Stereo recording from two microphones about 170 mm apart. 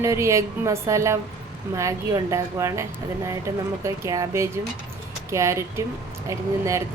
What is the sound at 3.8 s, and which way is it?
Speech, 20° right (ahead or behind).